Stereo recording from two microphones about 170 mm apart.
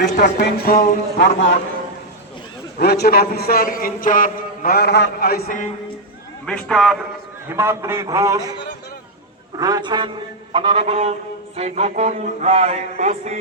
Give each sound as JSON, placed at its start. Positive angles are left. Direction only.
{"t": 0.0, "sound": "a man's voice", "side_deg": 75}
{"t": 2.7, "sound": "a man's voice", "side_deg": 70}
{"t": 6.4, "sound": "a man's voice", "side_deg": 5}
{"t": 7.5, "sound": "a man's voice", "side_deg": -15}
{"t": 9.6, "sound": "a man's voice", "side_deg": -20}